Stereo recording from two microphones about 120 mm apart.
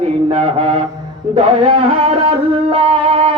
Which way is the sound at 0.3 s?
60° right (ahead or behind).